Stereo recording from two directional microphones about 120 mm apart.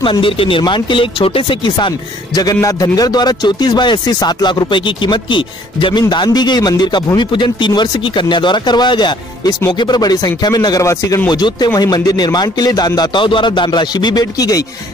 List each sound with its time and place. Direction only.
0.0 s speech: 45° left (ahead or behind)
2.3 s a man's voice: 30° left (ahead or behind)
11.2 s a man's voice: 35° left (ahead or behind)